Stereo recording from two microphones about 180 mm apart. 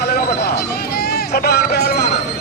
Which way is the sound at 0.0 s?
65° left (ahead or behind).